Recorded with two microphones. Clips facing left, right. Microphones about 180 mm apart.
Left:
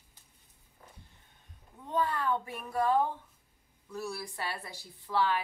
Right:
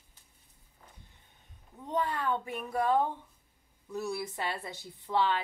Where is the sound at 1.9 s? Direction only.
20° right (ahead or behind).